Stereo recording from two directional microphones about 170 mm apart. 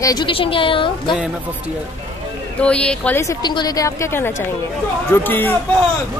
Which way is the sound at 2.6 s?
5° left (ahead or behind).